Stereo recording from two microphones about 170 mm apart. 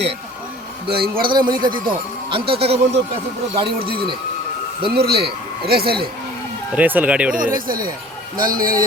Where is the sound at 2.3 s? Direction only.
30° right (ahead or behind).